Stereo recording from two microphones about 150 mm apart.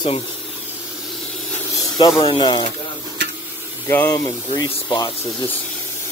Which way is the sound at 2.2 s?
30° left (ahead or behind).